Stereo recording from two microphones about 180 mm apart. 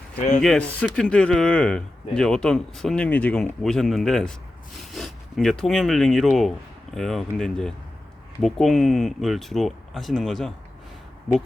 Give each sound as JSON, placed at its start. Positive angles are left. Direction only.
{"t": 0.2, "sound": "speech", "side_deg": 40}
{"t": 0.4, "sound": "speech", "side_deg": 5}